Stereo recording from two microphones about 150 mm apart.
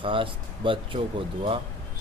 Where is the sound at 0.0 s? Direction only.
35° right (ahead or behind).